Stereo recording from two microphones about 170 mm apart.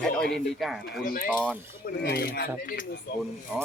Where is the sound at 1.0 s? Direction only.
60° left (ahead or behind).